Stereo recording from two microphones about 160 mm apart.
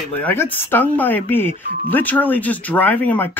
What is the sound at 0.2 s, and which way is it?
Speech, 15° left (ahead or behind).